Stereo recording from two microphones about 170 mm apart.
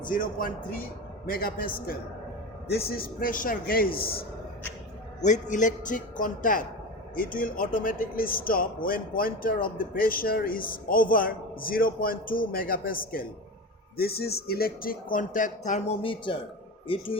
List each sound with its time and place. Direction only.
0.0 s speech: 55° left (ahead or behind)
5.2 s a man's voice: 45° left (ahead or behind)
16.0 s speech: 30° left (ahead or behind)